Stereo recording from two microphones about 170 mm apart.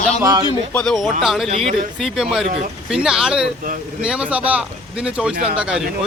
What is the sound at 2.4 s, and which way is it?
Speech, 45° right (ahead or behind).